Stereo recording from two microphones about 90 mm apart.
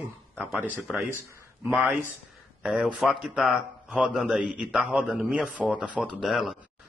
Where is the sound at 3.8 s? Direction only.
20° right (ahead or behind).